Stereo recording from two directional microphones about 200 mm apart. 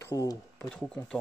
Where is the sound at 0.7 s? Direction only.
5° left (ahead or behind).